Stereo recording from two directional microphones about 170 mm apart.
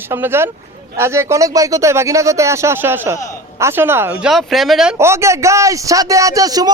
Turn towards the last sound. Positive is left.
turn(degrees=-20)  # may be behind; listen again after turning